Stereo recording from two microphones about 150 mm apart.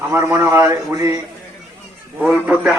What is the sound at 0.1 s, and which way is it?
A man's voice, 15° right (ahead or behind).